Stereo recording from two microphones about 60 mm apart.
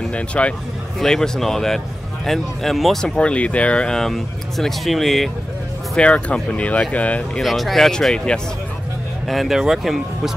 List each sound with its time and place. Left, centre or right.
0.1 s speech: centre
0.9 s speech: centre
3.2 s speech: centre
5.9 s speech: left
7.4 s speech: centre
9.3 s speech: centre